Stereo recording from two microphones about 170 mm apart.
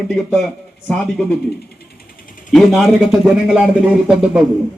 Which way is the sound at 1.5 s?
70° left (ahead or behind).